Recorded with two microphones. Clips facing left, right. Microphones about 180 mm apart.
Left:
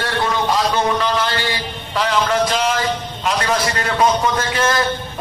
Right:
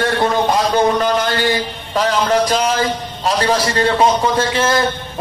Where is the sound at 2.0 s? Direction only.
40° right (ahead or behind).